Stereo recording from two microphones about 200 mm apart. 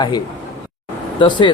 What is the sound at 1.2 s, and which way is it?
Speech, 25° left (ahead or behind).